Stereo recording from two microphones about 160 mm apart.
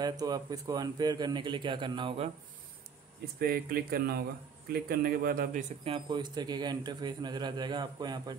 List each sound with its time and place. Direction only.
0.0 s a man's voice: 25° right (ahead or behind)
3.3 s speech: 70° right (ahead or behind)
5.9 s a man's voice: 30° right (ahead or behind)